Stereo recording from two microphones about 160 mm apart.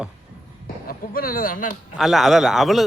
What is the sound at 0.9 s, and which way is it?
Speech, 65° left (ahead or behind).